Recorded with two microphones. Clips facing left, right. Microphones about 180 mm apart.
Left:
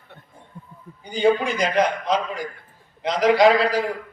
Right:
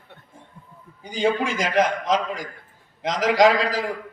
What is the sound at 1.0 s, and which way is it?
A man's voice, 90° right.